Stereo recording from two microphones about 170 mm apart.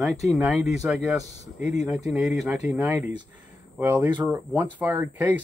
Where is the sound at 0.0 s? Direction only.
Centre (ahead or behind).